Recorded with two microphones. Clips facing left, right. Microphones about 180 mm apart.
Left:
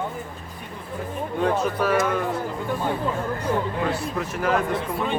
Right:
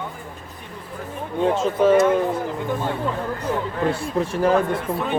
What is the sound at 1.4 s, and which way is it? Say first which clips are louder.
Speech: right 4 dB; 25° right (ahead or behind).